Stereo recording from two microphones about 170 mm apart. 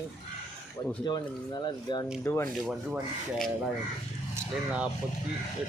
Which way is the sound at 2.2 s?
15° left (ahead or behind).